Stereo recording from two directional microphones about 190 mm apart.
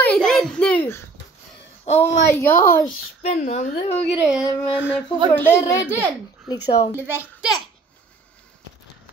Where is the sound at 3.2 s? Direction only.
35° left (ahead or behind).